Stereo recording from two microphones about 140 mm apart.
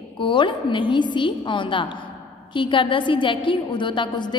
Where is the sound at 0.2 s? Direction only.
35° left (ahead or behind).